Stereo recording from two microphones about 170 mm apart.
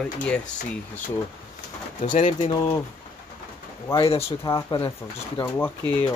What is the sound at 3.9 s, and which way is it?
Speech, 35° left (ahead or behind).